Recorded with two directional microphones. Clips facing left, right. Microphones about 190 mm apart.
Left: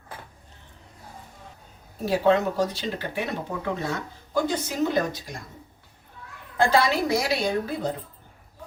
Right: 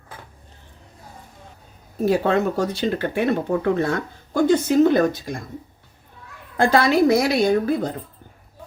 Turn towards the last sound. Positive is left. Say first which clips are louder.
# right 7 dB
turn(degrees=-55)  # may be behind; listen again after turning